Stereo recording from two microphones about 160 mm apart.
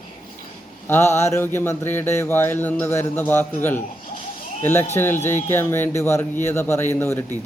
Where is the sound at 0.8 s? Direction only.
15° left (ahead or behind).